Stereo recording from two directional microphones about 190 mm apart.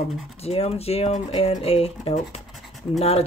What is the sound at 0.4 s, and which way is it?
Speech, 30° left (ahead or behind).